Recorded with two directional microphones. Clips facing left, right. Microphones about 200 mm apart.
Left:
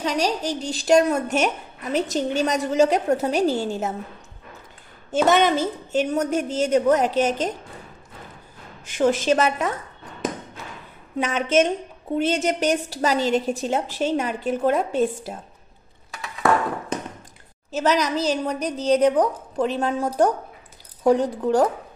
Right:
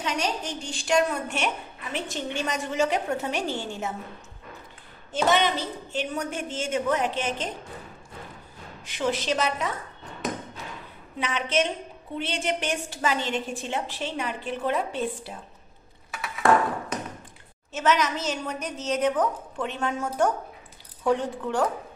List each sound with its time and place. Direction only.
0.0 s a woman's voice: 35° left (ahead or behind)
5.1 s a woman's voice: 45° left (ahead or behind)
8.8 s a woman's voice: 45° left (ahead or behind)
11.1 s a woman's voice: 45° left (ahead or behind)
17.6 s a woman's voice: 35° left (ahead or behind)